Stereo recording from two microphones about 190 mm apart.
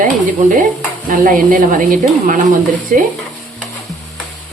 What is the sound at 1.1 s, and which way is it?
Speech, 45° right (ahead or behind).